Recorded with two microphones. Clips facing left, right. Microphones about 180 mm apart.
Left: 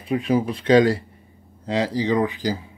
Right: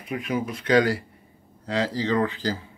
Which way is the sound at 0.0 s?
30° left (ahead or behind).